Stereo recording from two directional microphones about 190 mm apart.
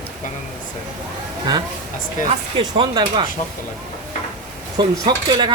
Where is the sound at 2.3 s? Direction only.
30° right (ahead or behind).